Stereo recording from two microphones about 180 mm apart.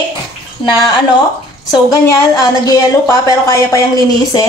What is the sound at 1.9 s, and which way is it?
Speech, 20° left (ahead or behind).